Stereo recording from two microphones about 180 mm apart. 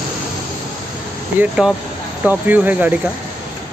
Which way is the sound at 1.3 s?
5° right (ahead or behind).